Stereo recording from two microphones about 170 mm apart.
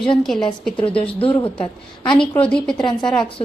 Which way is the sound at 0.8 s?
30° left (ahead or behind).